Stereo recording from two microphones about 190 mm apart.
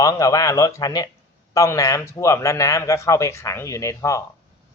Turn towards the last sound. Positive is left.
turn(degrees=15)  # may be behind; listen again after turning